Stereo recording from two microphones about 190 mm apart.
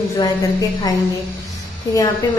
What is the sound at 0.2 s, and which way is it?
A woman's voice, 20° left (ahead or behind).